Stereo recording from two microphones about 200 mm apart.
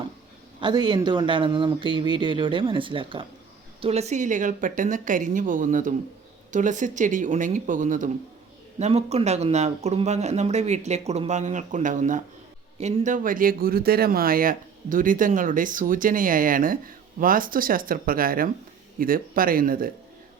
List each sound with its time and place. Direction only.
0.6 s speech: 20° right (ahead or behind); by 19.9 s 45° right (ahead or behind)